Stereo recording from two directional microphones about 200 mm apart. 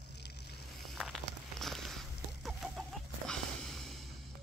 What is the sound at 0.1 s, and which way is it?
Vehicle, 55° left (ahead or behind).